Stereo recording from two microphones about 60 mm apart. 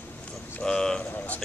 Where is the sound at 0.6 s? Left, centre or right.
Centre.